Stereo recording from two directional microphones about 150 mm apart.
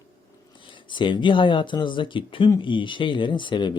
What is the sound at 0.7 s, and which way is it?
Speech, 30° left (ahead or behind).